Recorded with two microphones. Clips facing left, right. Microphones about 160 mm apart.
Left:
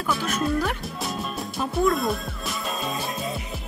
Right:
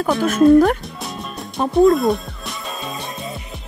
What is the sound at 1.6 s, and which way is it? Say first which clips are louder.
Music: right 8 dB; 40° right (ahead or behind).